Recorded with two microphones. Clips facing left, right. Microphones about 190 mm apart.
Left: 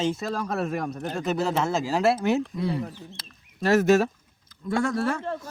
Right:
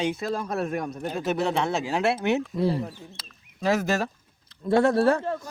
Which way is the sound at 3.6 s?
Centre (ahead or behind).